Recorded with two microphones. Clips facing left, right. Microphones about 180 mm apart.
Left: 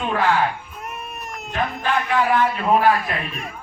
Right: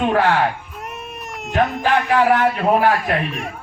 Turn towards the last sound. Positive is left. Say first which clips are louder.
# right 6 dB
turn(degrees=-80)